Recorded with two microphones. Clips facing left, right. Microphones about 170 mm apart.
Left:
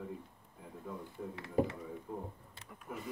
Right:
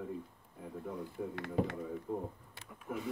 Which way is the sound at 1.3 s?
70° right (ahead or behind).